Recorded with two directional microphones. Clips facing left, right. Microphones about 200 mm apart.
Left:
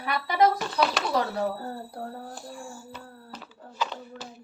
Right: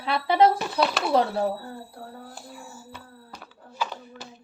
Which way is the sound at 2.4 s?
5° right (ahead or behind).